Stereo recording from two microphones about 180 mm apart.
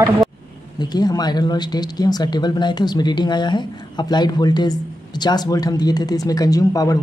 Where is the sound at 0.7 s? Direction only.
20° left (ahead or behind).